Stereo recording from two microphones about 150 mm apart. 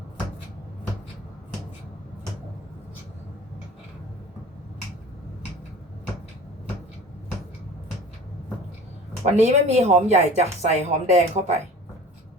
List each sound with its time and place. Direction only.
9.2 s speech: 50° right (ahead or behind)